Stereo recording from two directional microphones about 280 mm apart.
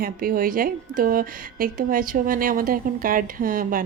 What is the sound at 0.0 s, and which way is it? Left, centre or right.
A woman's voice, right.